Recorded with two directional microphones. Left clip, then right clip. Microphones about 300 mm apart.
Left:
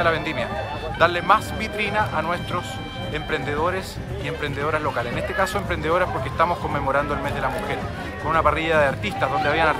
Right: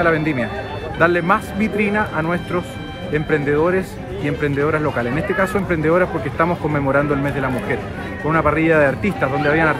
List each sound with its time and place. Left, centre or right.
0.0 s speech: centre